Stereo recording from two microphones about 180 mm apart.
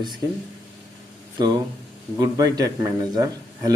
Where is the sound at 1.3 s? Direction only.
25° right (ahead or behind).